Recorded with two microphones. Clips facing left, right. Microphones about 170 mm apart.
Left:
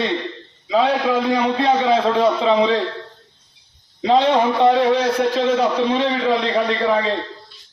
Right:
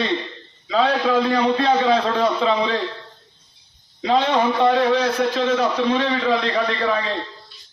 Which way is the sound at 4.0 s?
25° left (ahead or behind).